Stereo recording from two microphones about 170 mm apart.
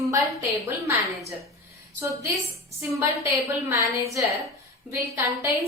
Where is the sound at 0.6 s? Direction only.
20° right (ahead or behind).